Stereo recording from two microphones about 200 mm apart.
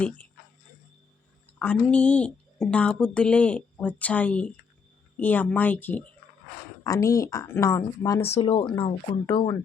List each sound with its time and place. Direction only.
0.0 s speech: 5° left (ahead or behind)
1.5 s a woman's voice: 5° left (ahead or behind)
8.2 s speech: 30° left (ahead or behind)